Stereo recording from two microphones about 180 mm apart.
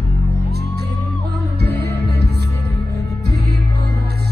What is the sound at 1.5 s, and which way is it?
Music, 65° right (ahead or behind).